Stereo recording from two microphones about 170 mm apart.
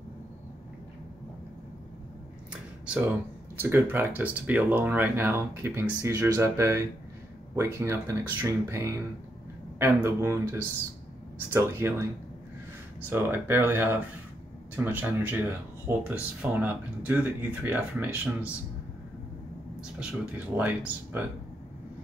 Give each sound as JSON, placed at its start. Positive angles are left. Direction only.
{"t": 2.5, "sound": "speech", "side_deg": -5}
{"t": 10.0, "sound": "speech", "side_deg": -15}
{"t": 13.1, "sound": "speech", "side_deg": -10}
{"t": 19.8, "sound": "speech", "side_deg": -5}